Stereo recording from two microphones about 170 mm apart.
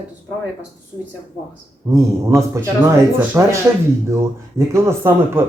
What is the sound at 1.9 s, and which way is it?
Speech, 15° right (ahead or behind).